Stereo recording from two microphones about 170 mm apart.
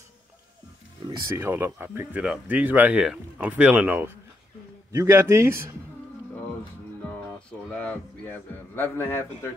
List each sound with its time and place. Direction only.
1.2 s speech: 15° right (ahead or behind)
7.7 s a man's voice: 10° left (ahead or behind)